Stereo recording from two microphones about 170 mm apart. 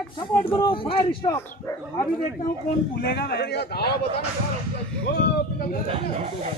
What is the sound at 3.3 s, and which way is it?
Speech, 75° left (ahead or behind).